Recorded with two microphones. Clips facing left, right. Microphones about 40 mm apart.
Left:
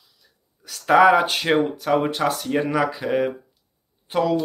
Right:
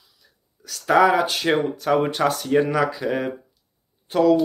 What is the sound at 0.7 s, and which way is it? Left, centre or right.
Speech, left.